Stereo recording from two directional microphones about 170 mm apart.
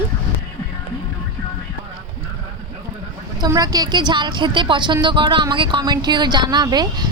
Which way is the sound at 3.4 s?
20° right (ahead or behind).